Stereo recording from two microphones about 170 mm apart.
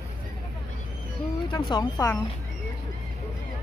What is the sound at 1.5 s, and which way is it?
Speech, 25° left (ahead or behind).